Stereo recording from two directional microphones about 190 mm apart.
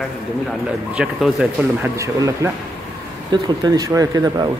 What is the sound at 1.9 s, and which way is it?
Speech, 15° right (ahead or behind).